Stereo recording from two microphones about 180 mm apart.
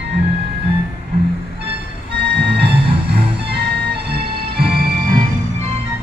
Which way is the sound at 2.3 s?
65° right (ahead or behind).